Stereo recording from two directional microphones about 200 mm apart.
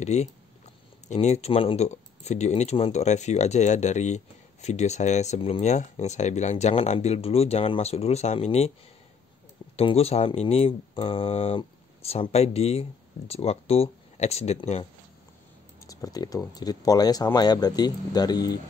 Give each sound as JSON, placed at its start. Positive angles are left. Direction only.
{"t": 0.0, "sound": "speech", "side_deg": 35}
{"t": 9.8, "sound": "speech", "side_deg": 30}
{"t": 15.9, "sound": "speech", "side_deg": 20}